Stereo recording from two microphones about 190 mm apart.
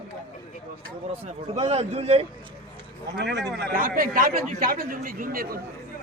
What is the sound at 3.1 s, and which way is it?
Speech, 65° right (ahead or behind).